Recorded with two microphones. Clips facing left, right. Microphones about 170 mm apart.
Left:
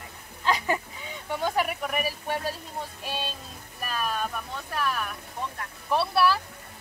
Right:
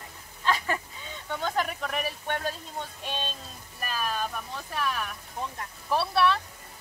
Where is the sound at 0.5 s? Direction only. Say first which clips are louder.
Left 2 dB; 15° left (ahead or behind).